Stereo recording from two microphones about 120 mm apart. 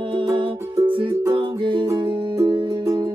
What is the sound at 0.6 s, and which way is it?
Music, 25° right (ahead or behind).